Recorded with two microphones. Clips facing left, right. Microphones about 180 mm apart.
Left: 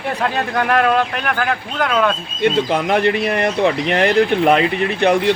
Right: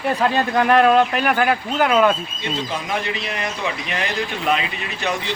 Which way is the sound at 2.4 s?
60° left (ahead or behind).